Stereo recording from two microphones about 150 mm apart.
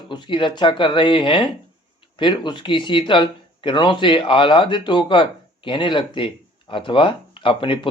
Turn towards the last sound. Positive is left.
turn(degrees=35)  # may be behind; listen again after turning